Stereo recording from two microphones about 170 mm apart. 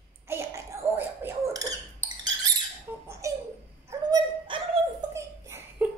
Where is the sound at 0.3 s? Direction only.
15° right (ahead or behind).